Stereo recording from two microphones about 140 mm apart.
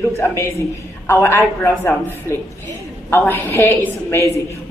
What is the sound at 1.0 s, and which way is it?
A woman's voice, 20° left (ahead or behind).